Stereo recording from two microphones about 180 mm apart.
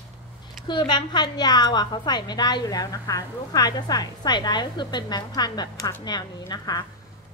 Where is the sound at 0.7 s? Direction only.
25° left (ahead or behind).